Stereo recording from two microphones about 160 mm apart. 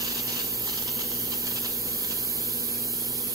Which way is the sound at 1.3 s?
20° right (ahead or behind).